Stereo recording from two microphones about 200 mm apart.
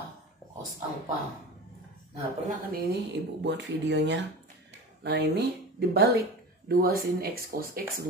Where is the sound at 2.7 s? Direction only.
55° right (ahead or behind).